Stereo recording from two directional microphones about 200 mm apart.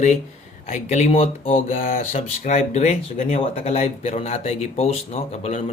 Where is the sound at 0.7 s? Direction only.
35° left (ahead or behind).